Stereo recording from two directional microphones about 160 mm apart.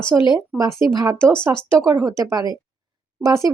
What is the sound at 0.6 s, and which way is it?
Speech, 20° right (ahead or behind).